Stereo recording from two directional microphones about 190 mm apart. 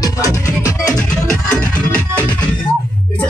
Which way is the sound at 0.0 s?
20° left (ahead or behind).